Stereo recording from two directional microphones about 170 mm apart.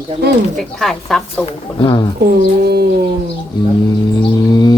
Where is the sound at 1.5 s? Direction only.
25° left (ahead or behind).